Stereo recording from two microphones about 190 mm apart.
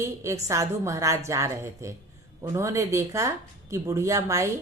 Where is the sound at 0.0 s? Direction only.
15° right (ahead or behind).